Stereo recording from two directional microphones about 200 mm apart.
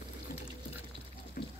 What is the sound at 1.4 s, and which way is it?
Water, 45° left (ahead or behind).